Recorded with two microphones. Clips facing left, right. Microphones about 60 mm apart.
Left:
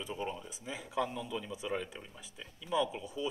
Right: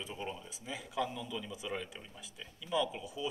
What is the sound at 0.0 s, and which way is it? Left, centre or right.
Speech, centre.